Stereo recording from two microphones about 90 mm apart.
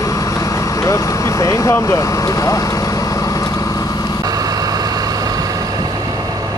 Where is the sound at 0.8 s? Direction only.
40° left (ahead or behind).